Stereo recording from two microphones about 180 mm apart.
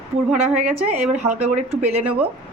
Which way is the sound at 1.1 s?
40° right (ahead or behind).